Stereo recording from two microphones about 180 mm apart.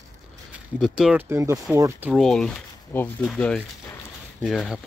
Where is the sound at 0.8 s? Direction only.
5° right (ahead or behind).